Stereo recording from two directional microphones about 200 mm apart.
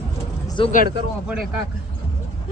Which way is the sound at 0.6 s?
25° left (ahead or behind).